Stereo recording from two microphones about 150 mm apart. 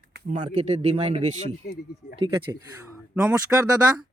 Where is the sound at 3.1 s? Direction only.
10° right (ahead or behind).